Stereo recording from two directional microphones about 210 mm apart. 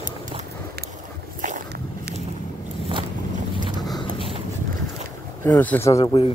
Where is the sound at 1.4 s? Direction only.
40° right (ahead or behind).